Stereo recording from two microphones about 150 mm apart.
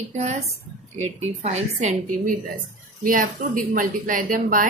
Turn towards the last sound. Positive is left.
turn(degrees=-65)  # may be behind; listen again after turning